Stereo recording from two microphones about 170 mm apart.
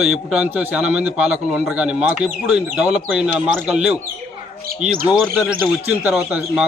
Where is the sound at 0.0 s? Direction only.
5° right (ahead or behind).